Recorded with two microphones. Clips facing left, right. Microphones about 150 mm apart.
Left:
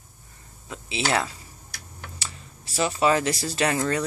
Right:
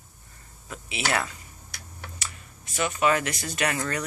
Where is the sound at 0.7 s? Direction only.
25° left (ahead or behind).